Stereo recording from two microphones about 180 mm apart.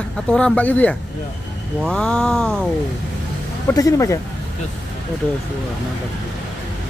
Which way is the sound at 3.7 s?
20° left (ahead or behind).